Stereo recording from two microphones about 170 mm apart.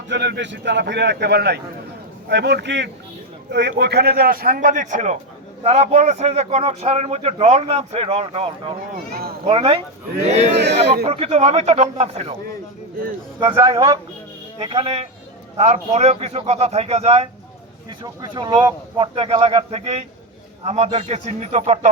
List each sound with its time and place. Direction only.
0.1 s a man's voice: 85° right; by 10.5 s 40° right (ahead or behind)
10.5 s a man's voice: 85° right
11.0 s speech: 35° right (ahead or behind)
13.4 s speech: 30° right (ahead or behind)
18.0 s speech: 25° right (ahead or behind); by 21.8 s 40° right (ahead or behind)